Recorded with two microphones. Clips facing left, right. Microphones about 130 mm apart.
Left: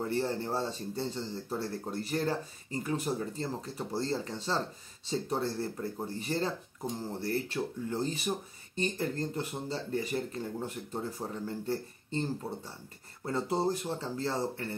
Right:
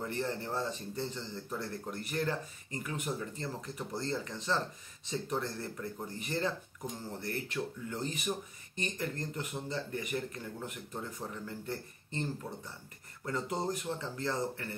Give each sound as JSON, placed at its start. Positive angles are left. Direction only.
{"t": 0.0, "sound": "speech", "side_deg": 30}